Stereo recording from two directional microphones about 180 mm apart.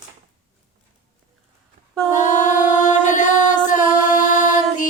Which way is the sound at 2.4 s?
45° left (ahead or behind).